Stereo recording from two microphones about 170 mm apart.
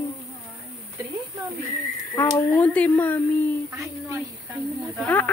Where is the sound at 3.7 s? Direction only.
20° right (ahead or behind).